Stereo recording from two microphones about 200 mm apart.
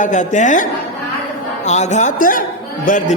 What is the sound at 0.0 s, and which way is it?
A man's voice, 40° left (ahead or behind).